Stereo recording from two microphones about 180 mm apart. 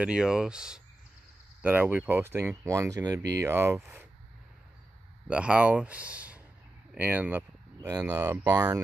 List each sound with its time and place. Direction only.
0.0 s speech: 5° right (ahead or behind)
5.3 s speech: 5° right (ahead or behind)